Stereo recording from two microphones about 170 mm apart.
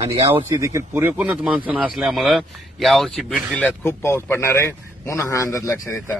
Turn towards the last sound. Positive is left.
turn(degrees=15)  # may be behind; listen again after turning